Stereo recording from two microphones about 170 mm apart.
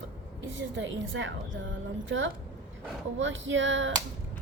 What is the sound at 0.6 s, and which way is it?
A woman's voice, 90° right.